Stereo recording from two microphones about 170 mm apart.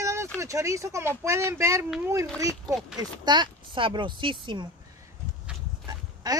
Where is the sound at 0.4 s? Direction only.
20° right (ahead or behind).